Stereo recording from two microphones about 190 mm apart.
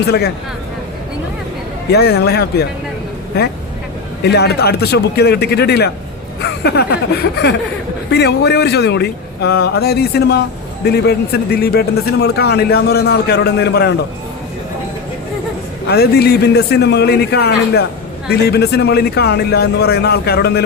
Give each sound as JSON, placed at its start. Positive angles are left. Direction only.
{"t": 1.9, "sound": "a man's voice", "side_deg": 60}
{"t": 15.9, "sound": "a man's voice", "side_deg": 60}